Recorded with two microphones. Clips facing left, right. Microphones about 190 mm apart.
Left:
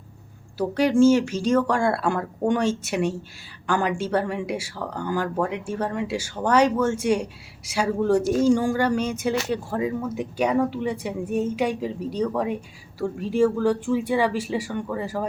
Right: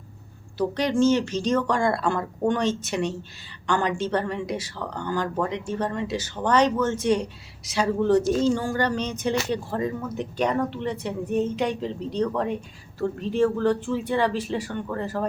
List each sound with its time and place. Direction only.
0.6 s speech: 5° left (ahead or behind)